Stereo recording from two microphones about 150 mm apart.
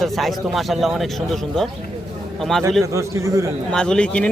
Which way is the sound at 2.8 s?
20° right (ahead or behind).